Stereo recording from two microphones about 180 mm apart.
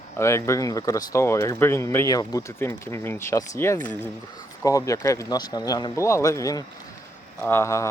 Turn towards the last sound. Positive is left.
turn(degrees=15)  # may be behind; listen again after turning